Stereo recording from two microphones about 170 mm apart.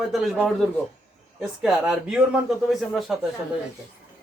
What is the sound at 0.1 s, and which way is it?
Speech, centre (ahead or behind).